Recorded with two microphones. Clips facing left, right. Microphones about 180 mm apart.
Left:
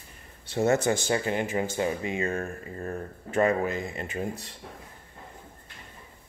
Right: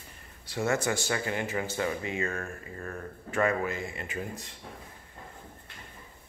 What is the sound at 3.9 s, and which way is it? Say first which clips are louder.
Speech: left 4 dB; 35° left (ahead or behind).